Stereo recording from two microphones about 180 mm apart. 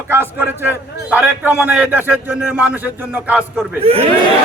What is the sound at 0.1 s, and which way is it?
A man's voice, 15° right (ahead or behind).